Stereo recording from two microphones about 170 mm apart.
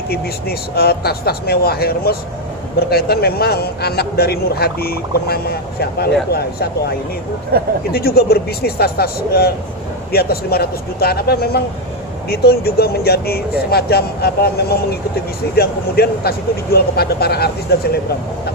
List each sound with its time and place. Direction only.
0.1 s speech: 65° left (ahead or behind)
7.9 s speech: 65° left (ahead or behind)